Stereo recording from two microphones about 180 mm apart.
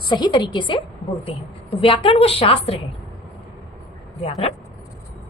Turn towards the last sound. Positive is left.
turn(degrees=35)  # may be behind; listen again after turning